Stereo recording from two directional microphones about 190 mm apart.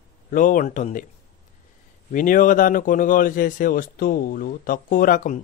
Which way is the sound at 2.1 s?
45° left (ahead or behind).